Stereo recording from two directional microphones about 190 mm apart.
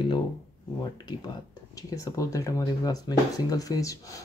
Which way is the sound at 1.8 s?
15° left (ahead or behind).